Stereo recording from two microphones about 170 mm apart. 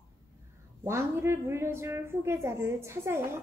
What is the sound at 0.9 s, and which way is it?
A woman's voice, 15° right (ahead or behind).